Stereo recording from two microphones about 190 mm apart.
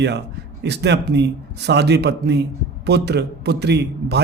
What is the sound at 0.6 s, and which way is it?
A man's voice, 60° right (ahead or behind).